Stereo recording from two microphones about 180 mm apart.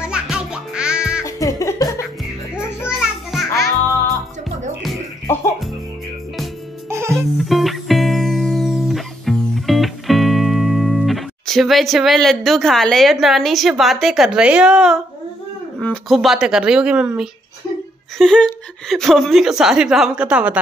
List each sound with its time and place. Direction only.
0.0 s music: 5° right (ahead or behind)
1.2 s music: 15° left (ahead or behind)
3.0 s music: centre (ahead or behind)
5.2 s music: 15° left (ahead or behind)
6.9 s music: 15° right (ahead or behind)
7.3 s music: centre (ahead or behind)
15.8 s a woman's voice: centre (ahead or behind)